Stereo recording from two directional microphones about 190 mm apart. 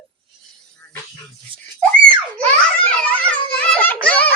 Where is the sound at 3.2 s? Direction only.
5° left (ahead or behind).